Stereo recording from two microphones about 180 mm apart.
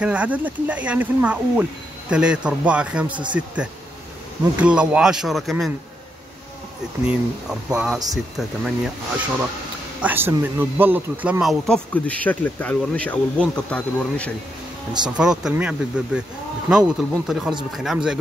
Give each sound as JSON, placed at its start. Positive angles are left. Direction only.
{"t": 0.0, "sound": "speech", "side_deg": -5}
{"t": 3.1, "sound": "speech", "side_deg": -25}
{"t": 4.6, "sound": "speech", "side_deg": -5}
{"t": 7.1, "sound": "speech", "side_deg": -5}
{"t": 10.0, "sound": "speech", "side_deg": -10}
{"t": 15.0, "sound": "speech", "side_deg": -5}